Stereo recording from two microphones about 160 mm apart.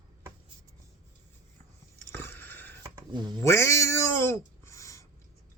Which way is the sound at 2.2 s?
10° left (ahead or behind).